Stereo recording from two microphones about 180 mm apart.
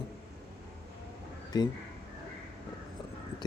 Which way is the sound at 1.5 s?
20° left (ahead or behind).